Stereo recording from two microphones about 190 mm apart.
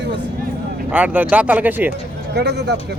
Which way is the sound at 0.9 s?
10° right (ahead or behind).